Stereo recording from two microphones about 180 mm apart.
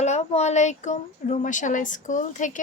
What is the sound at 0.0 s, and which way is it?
A woman's voice, 40° left (ahead or behind).